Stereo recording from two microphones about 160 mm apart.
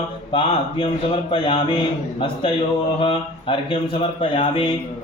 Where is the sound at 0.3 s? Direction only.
35° left (ahead or behind).